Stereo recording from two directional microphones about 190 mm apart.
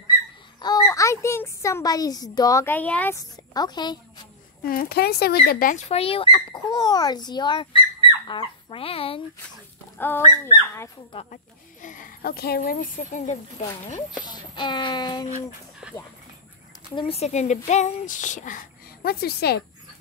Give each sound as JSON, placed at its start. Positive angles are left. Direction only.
{"t": 0.6, "sound": "a woman's voice", "side_deg": 20}
{"t": 4.6, "sound": "speech", "side_deg": 55}
{"t": 9.9, "sound": "speech", "side_deg": 10}
{"t": 11.8, "sound": "speech", "side_deg": 45}
{"t": 14.2, "sound": "speech", "side_deg": 25}
{"t": 16.9, "sound": "speech", "side_deg": 30}